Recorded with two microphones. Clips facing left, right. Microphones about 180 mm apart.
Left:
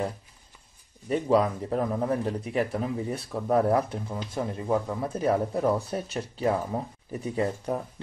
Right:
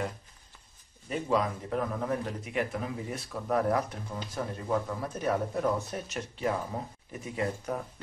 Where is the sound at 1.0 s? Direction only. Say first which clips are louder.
Left 6 dB; 35° left (ahead or behind).